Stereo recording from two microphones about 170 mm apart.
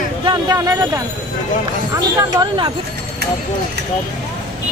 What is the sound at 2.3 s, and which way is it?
Speech, 25° right (ahead or behind).